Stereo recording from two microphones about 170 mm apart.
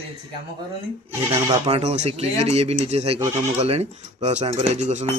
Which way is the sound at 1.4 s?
35° right (ahead or behind).